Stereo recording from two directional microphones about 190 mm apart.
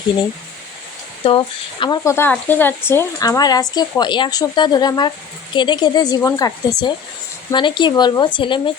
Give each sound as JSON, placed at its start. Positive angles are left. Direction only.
{"t": 1.2, "sound": "speech", "side_deg": 25}